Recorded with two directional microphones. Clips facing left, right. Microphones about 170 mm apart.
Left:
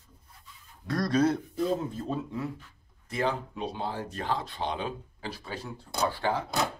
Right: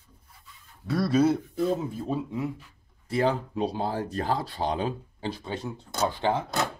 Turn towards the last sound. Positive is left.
turn(degrees=-20)  # may be behind; listen again after turning